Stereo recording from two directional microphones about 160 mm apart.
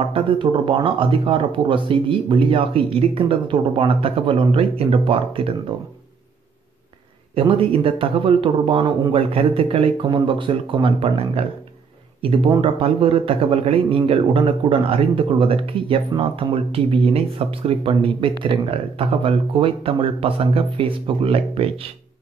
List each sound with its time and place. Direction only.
0.0 s a man's voice: 35° right (ahead or behind)
7.3 s a man's voice: 35° right (ahead or behind)